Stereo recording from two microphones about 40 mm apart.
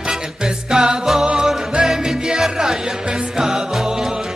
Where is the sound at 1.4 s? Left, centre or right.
Centre.